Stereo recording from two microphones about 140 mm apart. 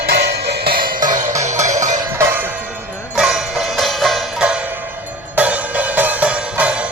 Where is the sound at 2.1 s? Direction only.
15° right (ahead or behind).